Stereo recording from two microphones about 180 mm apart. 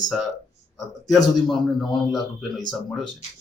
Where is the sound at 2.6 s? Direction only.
25° left (ahead or behind).